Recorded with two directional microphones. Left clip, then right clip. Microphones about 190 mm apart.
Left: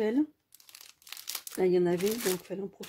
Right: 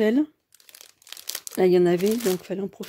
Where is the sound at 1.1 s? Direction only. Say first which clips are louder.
Right 5 dB; 20° right (ahead or behind).